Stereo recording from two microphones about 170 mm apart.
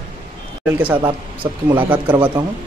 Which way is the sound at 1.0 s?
30° right (ahead or behind).